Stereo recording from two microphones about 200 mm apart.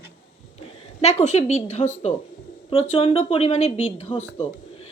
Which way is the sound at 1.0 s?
30° left (ahead or behind).